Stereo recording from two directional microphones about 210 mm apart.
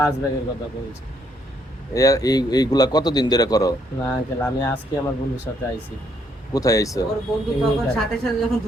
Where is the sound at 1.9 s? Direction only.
15° left (ahead or behind).